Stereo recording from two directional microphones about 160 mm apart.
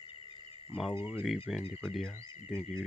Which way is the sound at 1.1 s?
Centre (ahead or behind).